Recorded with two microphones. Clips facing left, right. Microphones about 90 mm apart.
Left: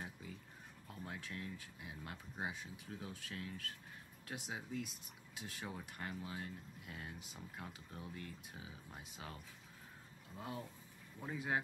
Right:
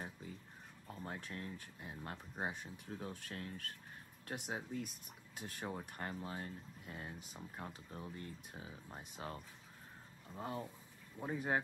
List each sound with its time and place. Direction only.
0.8 s speech: 40° right (ahead or behind)